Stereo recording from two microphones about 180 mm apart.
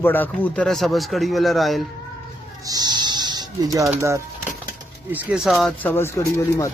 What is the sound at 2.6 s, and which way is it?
Music, 20° right (ahead or behind).